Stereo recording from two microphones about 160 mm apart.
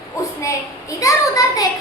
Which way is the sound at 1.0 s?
20° left (ahead or behind).